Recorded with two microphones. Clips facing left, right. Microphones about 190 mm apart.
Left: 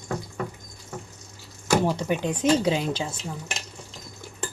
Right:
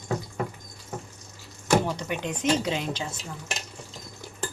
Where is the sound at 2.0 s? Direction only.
35° left (ahead or behind).